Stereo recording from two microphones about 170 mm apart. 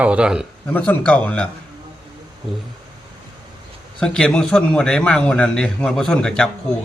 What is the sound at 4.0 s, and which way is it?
A man's voice, 5° left (ahead or behind).